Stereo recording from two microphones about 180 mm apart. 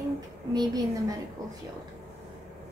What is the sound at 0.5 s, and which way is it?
Speech, 20° right (ahead or behind).